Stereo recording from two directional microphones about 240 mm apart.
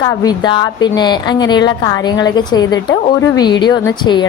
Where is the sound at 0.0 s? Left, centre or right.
Centre.